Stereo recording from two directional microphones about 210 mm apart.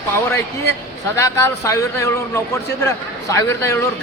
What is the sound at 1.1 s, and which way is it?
A man's voice, 15° left (ahead or behind).